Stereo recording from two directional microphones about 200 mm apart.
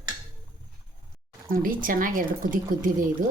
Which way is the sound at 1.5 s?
45° right (ahead or behind).